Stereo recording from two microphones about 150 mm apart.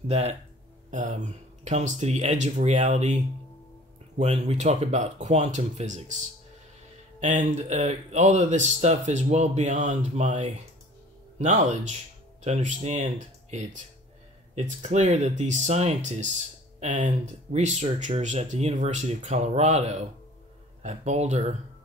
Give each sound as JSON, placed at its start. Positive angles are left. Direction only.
{"t": 0.1, "sound": "speech", "side_deg": -45}
{"t": 0.8, "sound": "speech", "side_deg": -55}
{"t": 4.2, "sound": "speech", "side_deg": -45}